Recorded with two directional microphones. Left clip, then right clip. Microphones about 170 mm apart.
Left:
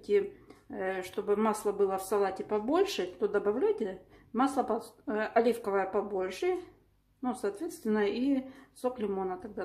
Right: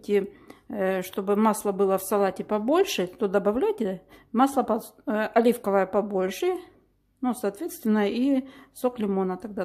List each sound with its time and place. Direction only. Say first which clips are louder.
0.0 s speech: right 3 dB; 55° right (ahead or behind)